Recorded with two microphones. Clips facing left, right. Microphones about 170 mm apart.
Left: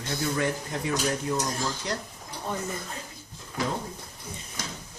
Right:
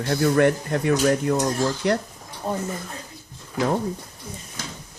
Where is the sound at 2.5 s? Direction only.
40° right (ahead or behind).